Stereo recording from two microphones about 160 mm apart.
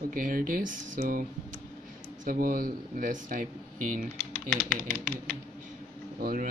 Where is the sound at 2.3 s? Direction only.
65° right (ahead or behind).